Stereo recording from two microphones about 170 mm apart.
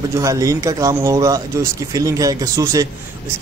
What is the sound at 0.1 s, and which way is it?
Speech, 20° right (ahead or behind).